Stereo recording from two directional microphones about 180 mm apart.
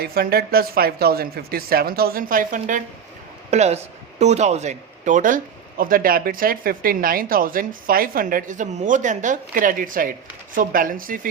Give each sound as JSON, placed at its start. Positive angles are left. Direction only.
{"t": 0.0, "sound": "speech", "side_deg": -60}